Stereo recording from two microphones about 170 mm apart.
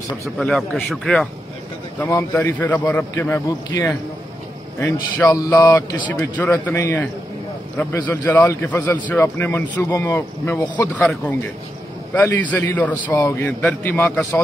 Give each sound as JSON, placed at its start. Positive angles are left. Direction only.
{"t": 0.4, "sound": "speech", "side_deg": 5}
{"t": 2.0, "sound": "a man's voice", "side_deg": 15}